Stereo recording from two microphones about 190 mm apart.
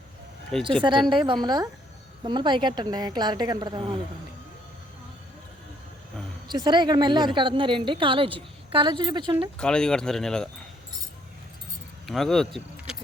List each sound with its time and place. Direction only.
0.8 s a woman's voice: 25° right (ahead or behind)
6.5 s a woman's voice: 25° right (ahead or behind)
9.6 s speech: 5° left (ahead or behind)
12.0 s speech: centre (ahead or behind)
12.5 s keys jangling: 5° right (ahead or behind)